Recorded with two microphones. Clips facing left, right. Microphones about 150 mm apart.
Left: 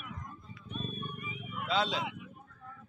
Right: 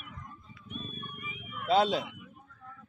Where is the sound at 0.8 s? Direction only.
30° left (ahead or behind).